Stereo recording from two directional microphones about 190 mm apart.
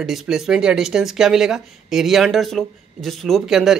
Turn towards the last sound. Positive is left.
turn(degrees=0)  # may be behind; listen again after turning